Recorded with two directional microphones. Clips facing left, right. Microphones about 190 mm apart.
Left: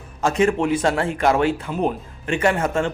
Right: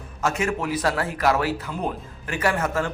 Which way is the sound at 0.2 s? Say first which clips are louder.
Left 6 dB; 30° left (ahead or behind).